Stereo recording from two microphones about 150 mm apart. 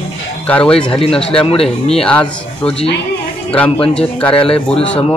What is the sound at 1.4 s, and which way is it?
Speech, 40° left (ahead or behind).